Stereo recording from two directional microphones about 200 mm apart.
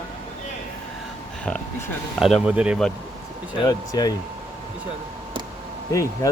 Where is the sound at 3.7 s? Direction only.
20° left (ahead or behind).